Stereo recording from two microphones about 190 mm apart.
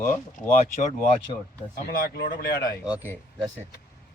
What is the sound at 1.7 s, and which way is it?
Speech, 55° left (ahead or behind).